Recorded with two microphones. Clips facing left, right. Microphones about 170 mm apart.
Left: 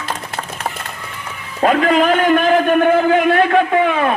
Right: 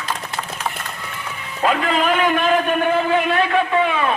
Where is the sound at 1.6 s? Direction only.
45° left (ahead or behind).